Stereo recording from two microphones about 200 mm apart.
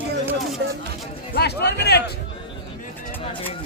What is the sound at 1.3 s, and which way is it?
Music, 55° left (ahead or behind).